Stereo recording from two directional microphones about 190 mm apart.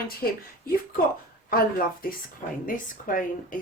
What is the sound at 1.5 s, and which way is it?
Speech, 50° left (ahead or behind).